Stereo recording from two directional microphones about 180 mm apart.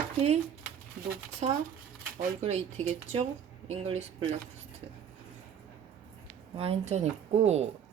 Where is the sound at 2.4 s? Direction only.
35° right (ahead or behind).